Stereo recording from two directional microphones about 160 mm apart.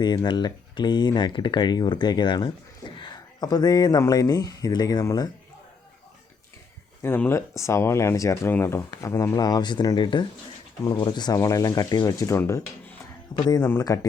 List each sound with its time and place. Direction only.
0.0 s speech: 25° left (ahead or behind)
7.0 s speech: 15° left (ahead or behind)